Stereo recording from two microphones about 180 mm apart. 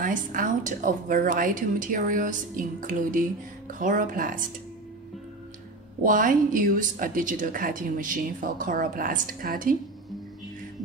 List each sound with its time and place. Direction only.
0.0 s speech: 50° right (ahead or behind)
6.0 s speech: 50° right (ahead or behind)